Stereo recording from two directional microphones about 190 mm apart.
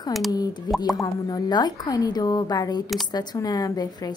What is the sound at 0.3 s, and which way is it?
A woman's voice, 20° left (ahead or behind).